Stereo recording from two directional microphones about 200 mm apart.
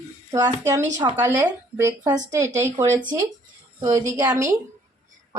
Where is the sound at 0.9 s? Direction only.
15° right (ahead or behind).